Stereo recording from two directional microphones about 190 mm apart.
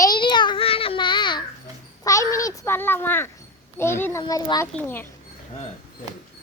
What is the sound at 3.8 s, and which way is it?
A child's voice, 10° left (ahead or behind).